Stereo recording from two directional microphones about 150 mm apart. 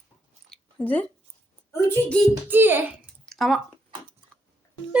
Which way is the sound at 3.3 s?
Centre (ahead or behind).